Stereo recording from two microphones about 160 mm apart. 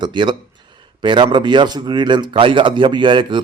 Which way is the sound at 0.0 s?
30° right (ahead or behind).